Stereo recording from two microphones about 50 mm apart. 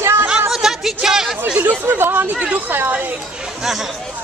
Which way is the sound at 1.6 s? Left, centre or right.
Right.